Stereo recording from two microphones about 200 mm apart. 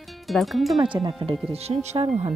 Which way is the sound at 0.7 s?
25° right (ahead or behind).